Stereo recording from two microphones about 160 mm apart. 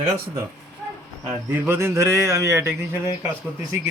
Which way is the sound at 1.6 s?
15° right (ahead or behind).